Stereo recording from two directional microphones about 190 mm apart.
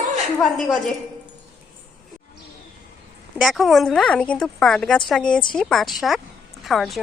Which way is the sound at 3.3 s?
Centre (ahead or behind).